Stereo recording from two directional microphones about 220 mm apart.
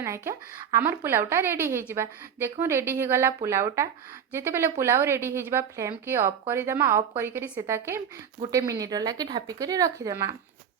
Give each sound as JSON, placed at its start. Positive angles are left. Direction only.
{"t": 0.0, "sound": "a woman's voice", "side_deg": -10}